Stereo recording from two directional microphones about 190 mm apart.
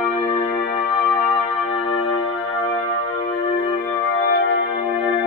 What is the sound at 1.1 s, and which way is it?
Music, 25° left (ahead or behind).